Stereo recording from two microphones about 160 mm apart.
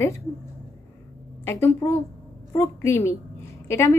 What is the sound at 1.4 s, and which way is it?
A woman's voice, 20° left (ahead or behind).